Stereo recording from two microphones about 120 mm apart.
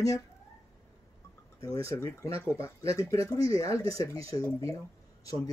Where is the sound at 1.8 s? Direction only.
25° left (ahead or behind).